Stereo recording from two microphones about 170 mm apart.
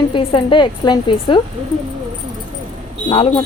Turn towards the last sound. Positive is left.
turn(degrees=30)  # may be behind; listen again after turning